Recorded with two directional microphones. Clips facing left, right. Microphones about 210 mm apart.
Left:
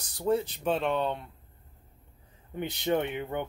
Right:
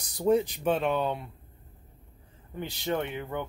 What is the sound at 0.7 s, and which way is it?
Speech, 5° right (ahead or behind).